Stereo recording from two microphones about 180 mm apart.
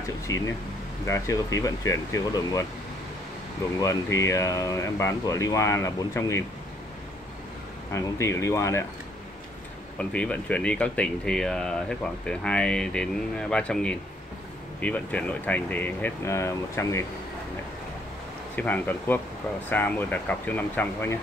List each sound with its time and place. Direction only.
0.3 s speech: 20° left (ahead or behind)
3.8 s speech: 15° left (ahead or behind)
7.9 s speech: 15° left (ahead or behind)
9.9 s speech: 5° left (ahead or behind)
18.6 s speech: 10° left (ahead or behind)